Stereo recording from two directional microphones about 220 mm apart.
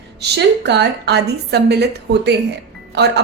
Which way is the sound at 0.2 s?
50° right (ahead or behind).